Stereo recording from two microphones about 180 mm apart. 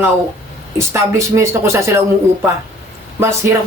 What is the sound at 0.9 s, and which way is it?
Speech, 15° right (ahead or behind).